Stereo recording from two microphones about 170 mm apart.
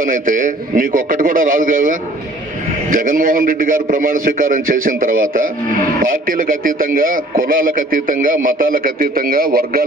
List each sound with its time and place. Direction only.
0.0 s a man's voice: 50° right (ahead or behind)